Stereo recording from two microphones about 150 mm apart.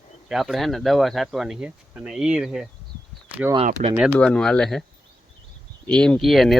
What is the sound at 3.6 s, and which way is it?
Speech, 45° right (ahead or behind).